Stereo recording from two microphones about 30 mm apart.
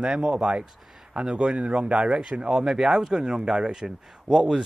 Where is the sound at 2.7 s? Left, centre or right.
Centre.